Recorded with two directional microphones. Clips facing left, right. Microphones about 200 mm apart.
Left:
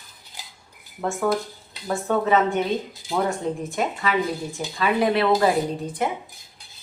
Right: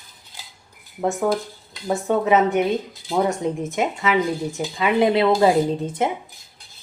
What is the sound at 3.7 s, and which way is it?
Speech, 20° right (ahead or behind).